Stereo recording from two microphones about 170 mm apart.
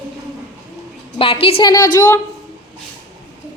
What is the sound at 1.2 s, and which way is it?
Speech, 35° left (ahead or behind).